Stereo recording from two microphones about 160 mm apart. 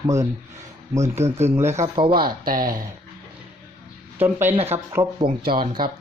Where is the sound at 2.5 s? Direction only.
60° right (ahead or behind).